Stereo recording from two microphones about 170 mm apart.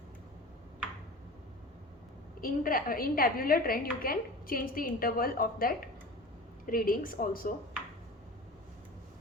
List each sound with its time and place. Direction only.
2.4 s a woman's voice: 55° left (ahead or behind)